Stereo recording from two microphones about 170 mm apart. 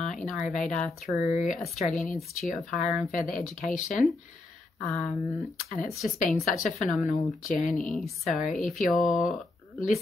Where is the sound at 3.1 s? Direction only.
50° left (ahead or behind).